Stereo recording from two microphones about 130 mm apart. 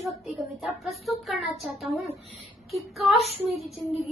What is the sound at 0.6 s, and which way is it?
Speech, centre (ahead or behind).